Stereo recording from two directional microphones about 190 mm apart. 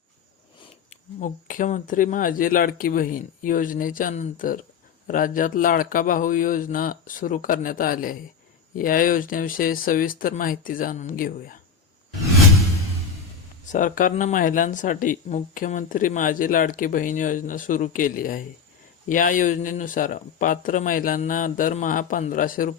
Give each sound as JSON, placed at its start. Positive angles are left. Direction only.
{"t": 1.2, "sound": "speech", "side_deg": 45}
{"t": 13.7, "sound": "speech", "side_deg": 45}